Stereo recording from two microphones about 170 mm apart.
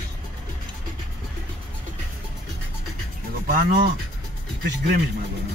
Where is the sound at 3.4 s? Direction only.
60° right (ahead or behind).